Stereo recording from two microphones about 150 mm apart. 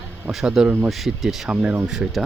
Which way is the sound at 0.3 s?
Centre (ahead or behind).